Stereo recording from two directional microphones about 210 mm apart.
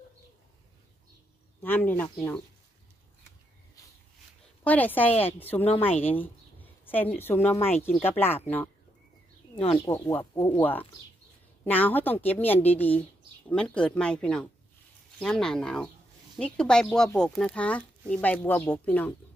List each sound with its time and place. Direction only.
1.6 s a woman's voice: 10° left (ahead or behind)
4.6 s a woman's voice: 10° left (ahead or behind)
9.8 s a woman's voice: 15° left (ahead or behind)